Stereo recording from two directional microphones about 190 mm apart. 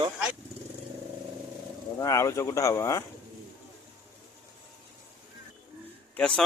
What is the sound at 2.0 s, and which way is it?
Speech, 15° left (ahead or behind).